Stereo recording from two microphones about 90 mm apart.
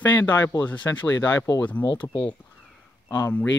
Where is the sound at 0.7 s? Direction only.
20° left (ahead or behind).